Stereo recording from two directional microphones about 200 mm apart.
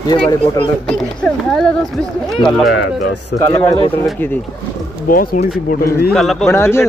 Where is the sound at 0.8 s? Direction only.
5° left (ahead or behind).